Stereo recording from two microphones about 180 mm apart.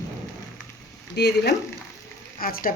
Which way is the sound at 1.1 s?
70° left (ahead or behind).